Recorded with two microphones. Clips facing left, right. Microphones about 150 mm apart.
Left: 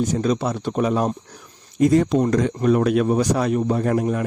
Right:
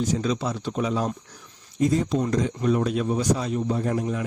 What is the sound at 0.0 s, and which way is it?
Speech, 50° left (ahead or behind).